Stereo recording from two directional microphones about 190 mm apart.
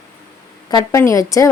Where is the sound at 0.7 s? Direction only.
15° left (ahead or behind).